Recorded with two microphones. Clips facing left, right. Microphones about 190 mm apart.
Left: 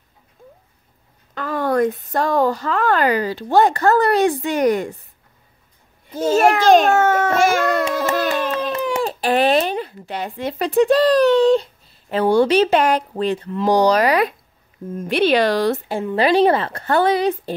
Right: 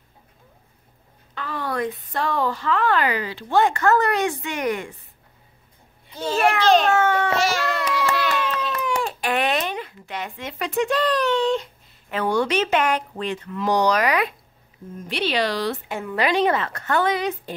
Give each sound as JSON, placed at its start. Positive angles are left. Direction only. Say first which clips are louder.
{"t": 1.3, "sound": "a woman's voice", "louder": "left 8 dB", "side_deg": 45}
{"t": 6.0, "sound": "a child's voice", "louder": "left 6 dB", "side_deg": 45}
{"t": 14.9, "sound": "a child's voice", "louder": "left 9 dB", "side_deg": 55}
{"t": 15.9, "sound": "a woman's voice", "louder": "left 4 dB", "side_deg": 30}